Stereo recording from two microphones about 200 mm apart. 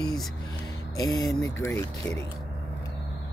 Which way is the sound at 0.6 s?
20° left (ahead or behind).